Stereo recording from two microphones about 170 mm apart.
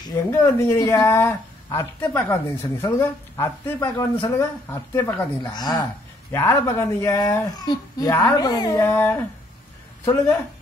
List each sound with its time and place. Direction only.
0.0 s speech: 15° left (ahead or behind)